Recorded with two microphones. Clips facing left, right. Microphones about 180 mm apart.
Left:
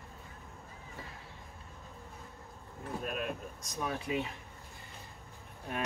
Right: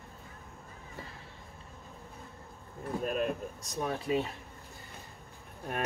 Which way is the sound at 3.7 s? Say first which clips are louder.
Right 4 dB; 35° right (ahead or behind).